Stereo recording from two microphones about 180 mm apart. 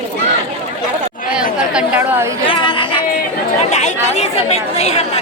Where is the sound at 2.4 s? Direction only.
30° left (ahead or behind).